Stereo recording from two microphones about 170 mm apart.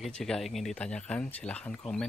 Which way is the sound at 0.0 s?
5° left (ahead or behind).